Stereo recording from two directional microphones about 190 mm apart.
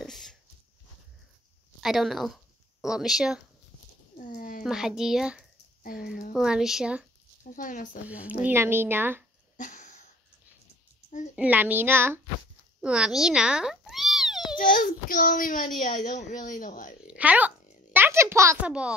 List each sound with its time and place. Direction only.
0.0 s a sound: centre (ahead or behind)
1.8 s speech: centre (ahead or behind)
4.2 s a sound: 45° left (ahead or behind)
4.6 s speech: 5° right (ahead or behind)
7.5 s a woman's voice: 45° left (ahead or behind)
8.1 s speech: 5° right (ahead or behind)
9.6 s sniff: 40° left (ahead or behind)
11.3 s speech: 10° right (ahead or behind)
12.8 s meow: 5° right (ahead or behind)
14.6 s a woman's voice: 45° left (ahead or behind)
17.1 s a child's voice: 5° right (ahead or behind)
17.9 s a sound: 15° right (ahead or behind)